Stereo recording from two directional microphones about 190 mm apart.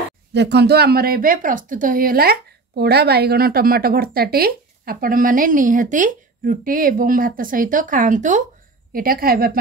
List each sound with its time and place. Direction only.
0.3 s speech: 60° right (ahead or behind)